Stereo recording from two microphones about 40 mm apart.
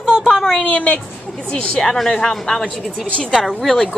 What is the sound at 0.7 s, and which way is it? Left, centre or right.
Speech, left.